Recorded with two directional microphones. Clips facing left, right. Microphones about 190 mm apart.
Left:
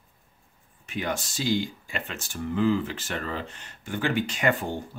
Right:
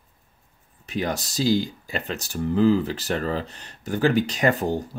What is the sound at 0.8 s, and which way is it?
Speech, 35° right (ahead or behind).